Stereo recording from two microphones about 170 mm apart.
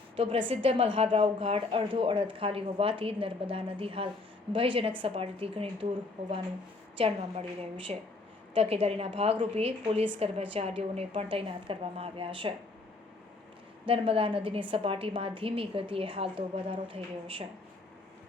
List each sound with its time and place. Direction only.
0.2 s a woman's voice: 30° right (ahead or behind)
6.9 s a woman's voice: 35° right (ahead or behind)
13.8 s a woman's voice: 30° right (ahead or behind)